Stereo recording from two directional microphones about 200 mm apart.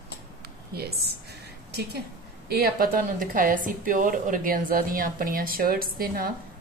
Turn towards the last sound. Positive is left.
turn(degrees=-45)  # may be behind; listen again after turning